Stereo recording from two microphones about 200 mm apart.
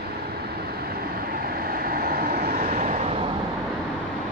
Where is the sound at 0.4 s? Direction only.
50° right (ahead or behind).